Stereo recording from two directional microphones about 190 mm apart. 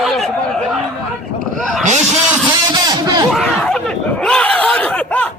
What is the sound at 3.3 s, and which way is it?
Chatter, 5° left (ahead or behind).